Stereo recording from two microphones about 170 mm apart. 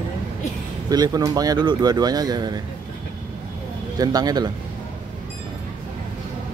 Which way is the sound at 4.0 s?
20° right (ahead or behind).